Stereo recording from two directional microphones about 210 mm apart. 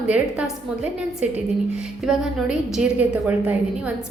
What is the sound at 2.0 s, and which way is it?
A woman's voice, centre (ahead or behind).